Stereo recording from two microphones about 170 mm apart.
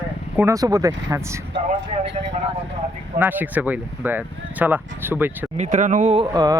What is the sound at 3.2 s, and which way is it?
Speech, 10° right (ahead or behind).